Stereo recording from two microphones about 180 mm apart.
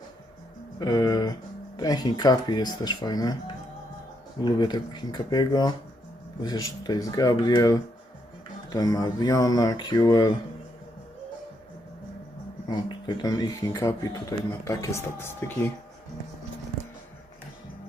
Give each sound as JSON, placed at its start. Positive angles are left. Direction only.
{"t": 0.8, "sound": "speech", "side_deg": 20}
{"t": 12.6, "sound": "speech", "side_deg": 25}